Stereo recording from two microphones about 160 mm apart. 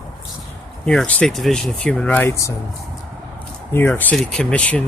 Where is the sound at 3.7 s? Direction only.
10° left (ahead or behind).